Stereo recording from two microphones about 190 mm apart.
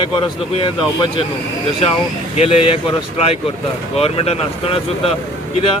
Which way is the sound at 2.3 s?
30° left (ahead or behind).